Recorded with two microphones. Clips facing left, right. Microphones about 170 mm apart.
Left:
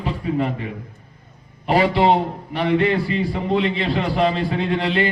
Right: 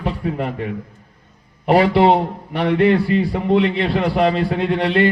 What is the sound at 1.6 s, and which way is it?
A man's voice, 60° right (ahead or behind).